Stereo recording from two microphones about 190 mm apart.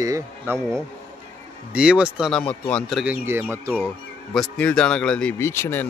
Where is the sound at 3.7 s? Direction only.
5° left (ahead or behind).